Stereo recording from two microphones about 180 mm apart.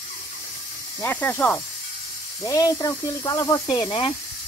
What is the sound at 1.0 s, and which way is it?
Speech, 10° left (ahead or behind).